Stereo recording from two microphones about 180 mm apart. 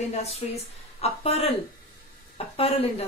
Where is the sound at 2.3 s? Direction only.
35° left (ahead or behind).